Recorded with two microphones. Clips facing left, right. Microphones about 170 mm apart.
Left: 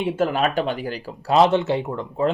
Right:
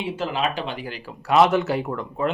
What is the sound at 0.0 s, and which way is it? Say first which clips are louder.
Speech: left 4 dB; 50° left (ahead or behind).